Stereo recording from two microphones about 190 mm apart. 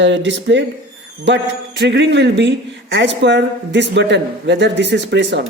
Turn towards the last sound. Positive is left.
turn(degrees=-65)  # may be behind; listen again after turning